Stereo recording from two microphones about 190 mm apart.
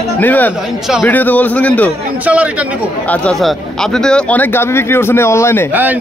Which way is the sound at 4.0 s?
5° left (ahead or behind).